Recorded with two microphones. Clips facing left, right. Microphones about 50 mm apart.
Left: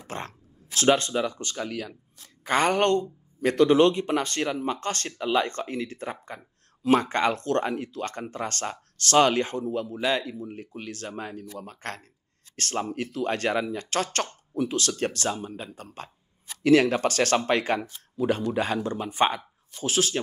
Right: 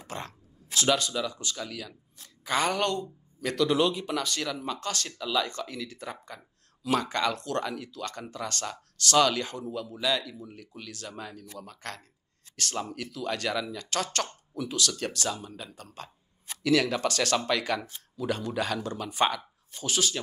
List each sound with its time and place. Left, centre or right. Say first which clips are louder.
0.0 s speech: left 3 dB; left